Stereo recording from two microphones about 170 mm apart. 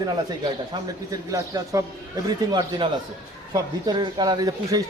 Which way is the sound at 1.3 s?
20° right (ahead or behind).